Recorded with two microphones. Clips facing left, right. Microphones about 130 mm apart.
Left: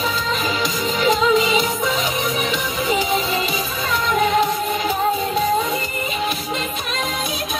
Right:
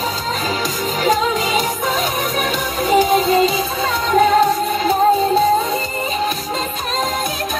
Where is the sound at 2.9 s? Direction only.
40° right (ahead or behind).